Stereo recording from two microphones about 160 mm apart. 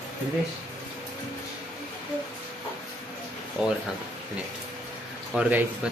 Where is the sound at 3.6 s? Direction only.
5° right (ahead or behind).